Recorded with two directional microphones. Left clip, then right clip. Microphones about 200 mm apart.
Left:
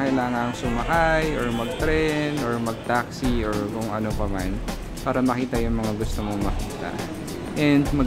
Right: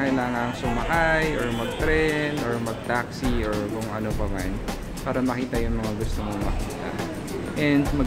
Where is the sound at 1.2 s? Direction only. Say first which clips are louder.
Even; centre (ahead or behind).